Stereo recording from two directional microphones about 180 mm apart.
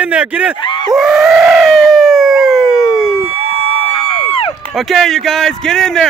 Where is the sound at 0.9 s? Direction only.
Centre (ahead or behind).